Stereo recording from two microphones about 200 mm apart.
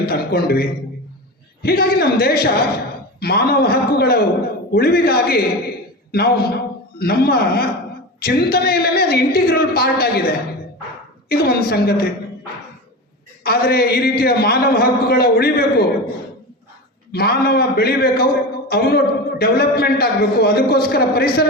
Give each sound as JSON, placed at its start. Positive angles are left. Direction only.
{"t": 0.0, "sound": "a man's voice", "side_deg": 50}
{"t": 13.4, "sound": "a man's voice", "side_deg": 50}
{"t": 17.1, "sound": "a man's voice", "side_deg": 50}